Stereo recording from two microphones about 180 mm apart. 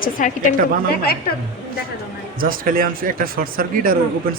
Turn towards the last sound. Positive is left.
turn(degrees=-55)  # may be behind; listen again after turning